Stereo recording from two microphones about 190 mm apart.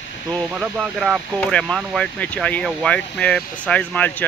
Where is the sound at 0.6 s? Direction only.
Centre (ahead or behind).